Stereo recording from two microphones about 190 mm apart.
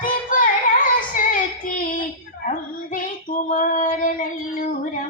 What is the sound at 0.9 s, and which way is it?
Child singing, 45° left (ahead or behind).